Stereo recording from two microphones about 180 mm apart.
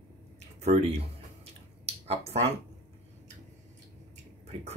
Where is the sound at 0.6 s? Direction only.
35° right (ahead or behind).